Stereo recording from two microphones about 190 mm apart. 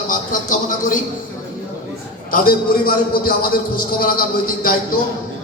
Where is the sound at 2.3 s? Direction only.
50° left (ahead or behind).